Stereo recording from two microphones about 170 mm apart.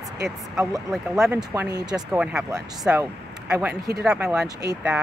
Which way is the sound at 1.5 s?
20° right (ahead or behind).